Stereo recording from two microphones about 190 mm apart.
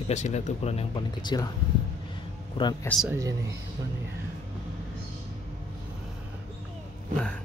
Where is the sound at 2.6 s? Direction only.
25° left (ahead or behind).